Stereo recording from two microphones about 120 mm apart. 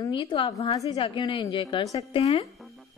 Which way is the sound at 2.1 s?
55° left (ahead or behind).